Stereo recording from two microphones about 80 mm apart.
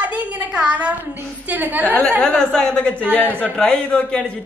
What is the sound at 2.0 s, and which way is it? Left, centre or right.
A man's voice, centre.